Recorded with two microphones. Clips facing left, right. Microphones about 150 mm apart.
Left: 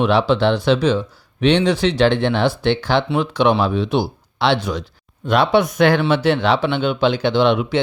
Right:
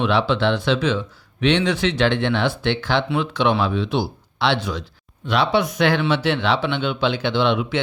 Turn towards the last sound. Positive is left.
turn(degrees=45)  # may be behind; listen again after turning